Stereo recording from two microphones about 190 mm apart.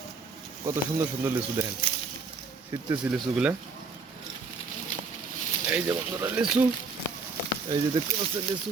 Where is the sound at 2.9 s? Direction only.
5° right (ahead or behind).